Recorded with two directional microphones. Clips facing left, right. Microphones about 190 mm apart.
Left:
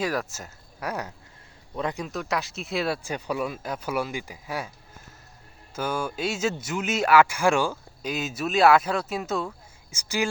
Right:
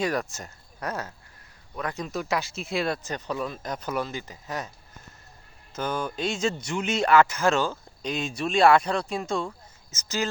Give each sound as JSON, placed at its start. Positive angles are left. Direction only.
{"t": 0.0, "sound": "speech", "side_deg": 5}
{"t": 1.7, "sound": "a man's voice", "side_deg": 25}
{"t": 2.0, "sound": "speech", "side_deg": 0}
{"t": 5.7, "sound": "speech", "side_deg": 10}